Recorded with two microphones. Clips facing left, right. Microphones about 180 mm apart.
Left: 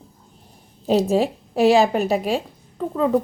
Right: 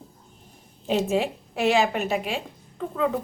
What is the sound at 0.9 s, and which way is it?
A woman's voice, 35° left (ahead or behind).